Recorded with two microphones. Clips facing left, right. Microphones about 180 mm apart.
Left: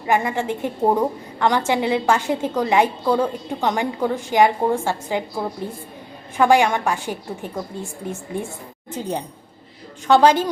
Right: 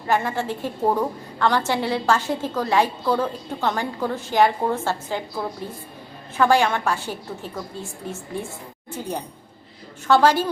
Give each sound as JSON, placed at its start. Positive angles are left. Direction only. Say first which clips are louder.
{"t": 0.1, "sound": "a woman's voice", "louder": "left 2 dB", "side_deg": 15}
{"t": 6.3, "sound": "a woman's voice", "louder": "left 3 dB", "side_deg": 15}
{"t": 8.9, "sound": "a woman's voice", "louder": "left 3 dB", "side_deg": 20}